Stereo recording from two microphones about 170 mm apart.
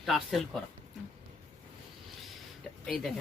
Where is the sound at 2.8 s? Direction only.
Centre (ahead or behind).